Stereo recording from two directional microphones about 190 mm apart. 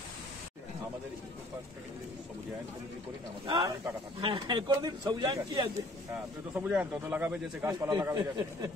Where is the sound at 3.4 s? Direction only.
25° right (ahead or behind).